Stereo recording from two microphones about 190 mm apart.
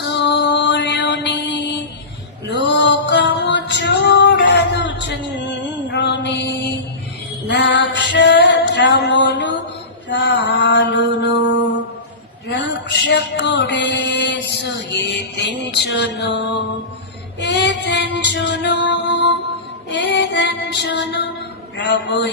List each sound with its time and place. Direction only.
0.0 s mantra: 65° left (ahead or behind)
2.5 s female singing: 65° left (ahead or behind)
5.9 s mantra: 65° left (ahead or behind)
7.4 s music: 65° left (ahead or behind)
10.1 s mantra: 65° left (ahead or behind)
12.5 s a sound: 65° left (ahead or behind)
17.4 s music: 65° left (ahead or behind)
19.9 s female singing: 65° left (ahead or behind)
21.8 s a sound: 65° left (ahead or behind)